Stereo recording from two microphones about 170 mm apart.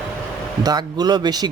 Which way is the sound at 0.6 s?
25° right (ahead or behind).